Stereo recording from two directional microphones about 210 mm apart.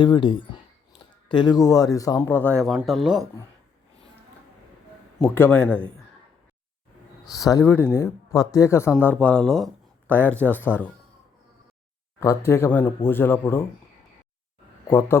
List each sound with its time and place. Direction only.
0.0 s speech: 25° left (ahead or behind)
2.6 s speech: centre (ahead or behind)
5.2 s speech: 10° left (ahead or behind)
7.3 s speech: 15° left (ahead or behind)
12.2 s speech: 15° left (ahead or behind)
14.8 s speech: 10° left (ahead or behind)